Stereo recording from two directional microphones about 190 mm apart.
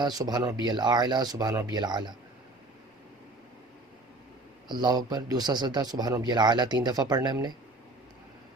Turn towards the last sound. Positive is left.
turn(degrees=-20)  # may be behind; listen again after turning